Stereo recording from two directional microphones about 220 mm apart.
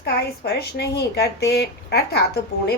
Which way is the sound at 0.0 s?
45° left (ahead or behind).